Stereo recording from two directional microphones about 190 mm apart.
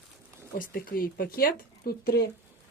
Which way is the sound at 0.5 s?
50° left (ahead or behind).